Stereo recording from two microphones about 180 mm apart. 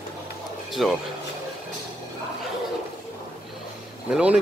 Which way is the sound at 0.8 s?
Centre (ahead or behind).